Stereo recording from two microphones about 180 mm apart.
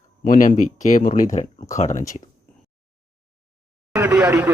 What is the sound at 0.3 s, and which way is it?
Speech, 45° left (ahead or behind).